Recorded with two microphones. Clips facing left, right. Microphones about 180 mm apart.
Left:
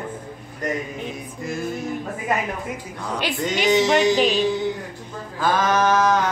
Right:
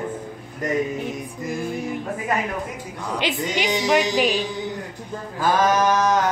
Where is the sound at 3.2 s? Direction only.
20° right (ahead or behind).